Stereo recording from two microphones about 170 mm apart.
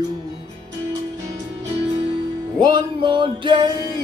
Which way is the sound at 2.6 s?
25° right (ahead or behind).